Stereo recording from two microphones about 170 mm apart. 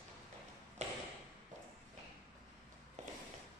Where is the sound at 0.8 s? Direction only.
45° right (ahead or behind).